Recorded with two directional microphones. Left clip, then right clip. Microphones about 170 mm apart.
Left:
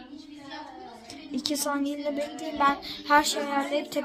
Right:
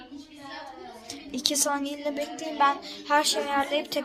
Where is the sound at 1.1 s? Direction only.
5° left (ahead or behind).